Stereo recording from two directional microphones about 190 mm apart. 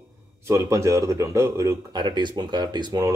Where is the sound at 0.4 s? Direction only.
15° right (ahead or behind).